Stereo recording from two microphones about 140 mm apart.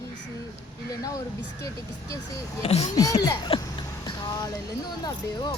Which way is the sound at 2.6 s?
50° left (ahead or behind).